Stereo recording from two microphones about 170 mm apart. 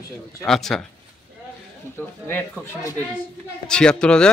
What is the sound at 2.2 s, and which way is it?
Speech, 10° left (ahead or behind).